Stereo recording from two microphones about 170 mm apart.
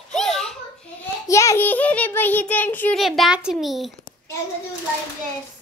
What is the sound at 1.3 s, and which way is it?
Child singing, 15° left (ahead or behind).